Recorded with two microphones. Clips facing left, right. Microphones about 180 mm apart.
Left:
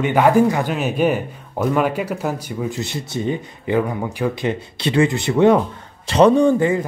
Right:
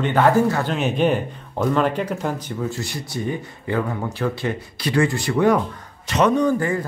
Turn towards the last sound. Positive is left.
turn(degrees=20)  # may be behind; listen again after turning